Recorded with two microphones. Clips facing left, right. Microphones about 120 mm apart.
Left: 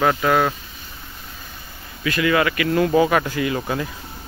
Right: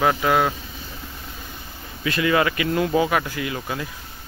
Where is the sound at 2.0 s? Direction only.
25° right (ahead or behind).